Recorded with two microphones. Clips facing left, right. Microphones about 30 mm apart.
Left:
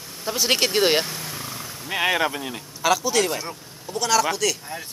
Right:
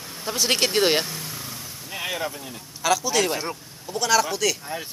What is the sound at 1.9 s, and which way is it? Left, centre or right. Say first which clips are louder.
Speech: left 7 dB; left.